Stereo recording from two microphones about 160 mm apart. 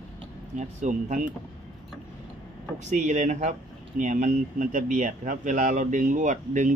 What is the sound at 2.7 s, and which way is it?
Speech, 45° right (ahead or behind).